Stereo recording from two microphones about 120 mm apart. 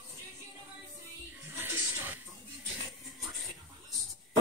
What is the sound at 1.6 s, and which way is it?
Music, 20° right (ahead or behind).